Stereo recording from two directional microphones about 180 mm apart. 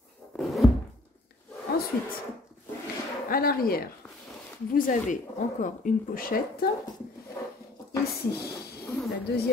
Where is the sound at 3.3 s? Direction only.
55° left (ahead or behind).